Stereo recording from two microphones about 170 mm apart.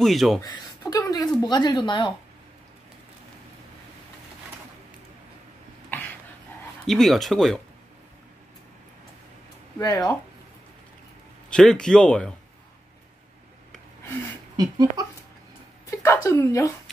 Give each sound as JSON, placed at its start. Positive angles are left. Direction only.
{"t": 0.0, "sound": "speech", "side_deg": 0}
{"t": 0.4, "sound": "speech", "side_deg": 20}
{"t": 5.9, "sound": "a sound", "side_deg": 15}
{"t": 6.9, "sound": "speech", "side_deg": 0}
{"t": 9.8, "sound": "speech", "side_deg": 25}
{"t": 11.5, "sound": "speech", "side_deg": 5}
{"t": 14.6, "sound": "speech", "side_deg": -20}
{"t": 15.9, "sound": "speech", "side_deg": 15}